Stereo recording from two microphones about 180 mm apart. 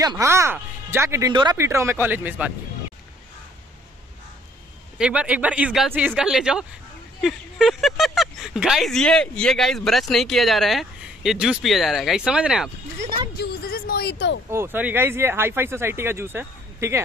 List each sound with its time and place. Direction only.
0.0 s speech: 20° right (ahead or behind)
4.9 s speech: 5° right (ahead or behind)
13.4 s a sound: 60° left (ahead or behind)
14.5 s speech: 15° right (ahead or behind)